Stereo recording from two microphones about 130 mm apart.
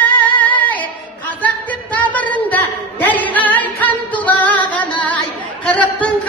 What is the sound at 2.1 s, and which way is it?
Music, 10° left (ahead or behind).